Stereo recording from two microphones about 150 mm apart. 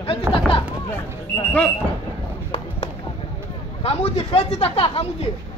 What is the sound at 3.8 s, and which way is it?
Speech, 40° left (ahead or behind).